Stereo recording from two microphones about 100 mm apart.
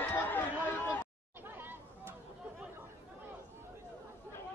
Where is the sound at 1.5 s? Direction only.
20° right (ahead or behind).